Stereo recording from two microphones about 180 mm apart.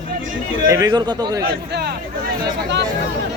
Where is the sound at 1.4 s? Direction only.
60° right (ahead or behind).